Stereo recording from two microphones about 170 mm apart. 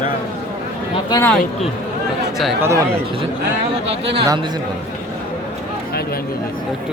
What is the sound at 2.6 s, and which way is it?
Speech, 20° right (ahead or behind).